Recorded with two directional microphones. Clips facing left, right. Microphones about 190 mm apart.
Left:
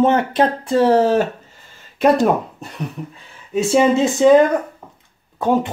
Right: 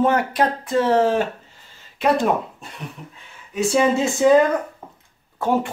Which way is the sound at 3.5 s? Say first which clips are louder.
Left 4 dB; 25° left (ahead or behind).